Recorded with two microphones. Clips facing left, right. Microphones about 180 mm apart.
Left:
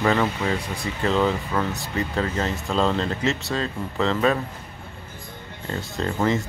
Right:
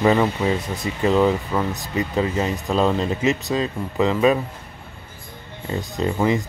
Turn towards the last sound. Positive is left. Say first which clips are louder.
# right 3 dB
turn(degrees=-10)  # may be behind; listen again after turning